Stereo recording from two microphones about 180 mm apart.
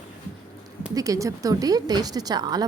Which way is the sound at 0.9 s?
20° right (ahead or behind).